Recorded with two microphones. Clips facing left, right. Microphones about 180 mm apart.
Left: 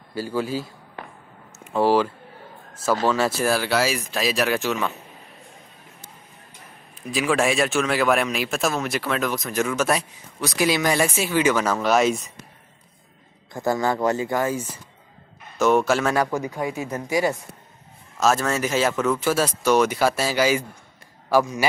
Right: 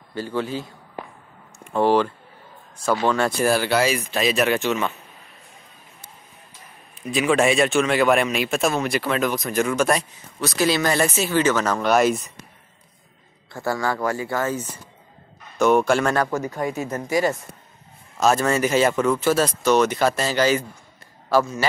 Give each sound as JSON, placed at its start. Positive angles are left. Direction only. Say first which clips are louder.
{"t": 0.1, "sound": "speech", "louder": "left 1 dB", "side_deg": 10}
{"t": 7.1, "sound": "speech", "louder": "right 3 dB", "side_deg": 0}
{"t": 10.4, "sound": "speech", "louder": "right 1 dB", "side_deg": 15}
{"t": 13.5, "sound": "speech", "louder": "left 2 dB", "side_deg": 20}
{"t": 18.2, "sound": "speech", "louder": "right 2 dB", "side_deg": 0}